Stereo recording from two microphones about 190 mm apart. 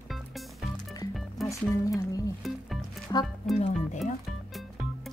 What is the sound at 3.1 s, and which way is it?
Speech, 20° left (ahead or behind).